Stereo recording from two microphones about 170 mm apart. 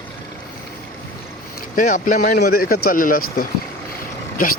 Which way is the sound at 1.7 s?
50° left (ahead or behind).